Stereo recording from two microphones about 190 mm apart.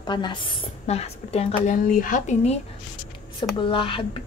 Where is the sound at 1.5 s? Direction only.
45° left (ahead or behind).